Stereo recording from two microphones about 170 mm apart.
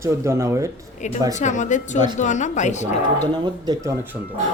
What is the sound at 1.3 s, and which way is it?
Speech, 45° left (ahead or behind).